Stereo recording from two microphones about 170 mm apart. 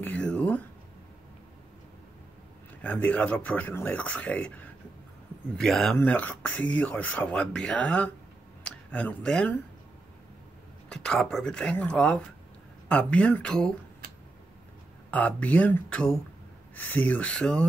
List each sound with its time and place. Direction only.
0.0 s speech: 5° left (ahead or behind)
2.8 s speech: 10° left (ahead or behind)
10.9 s speech: 5° left (ahead or behind)
15.0 s speech: 10° left (ahead or behind)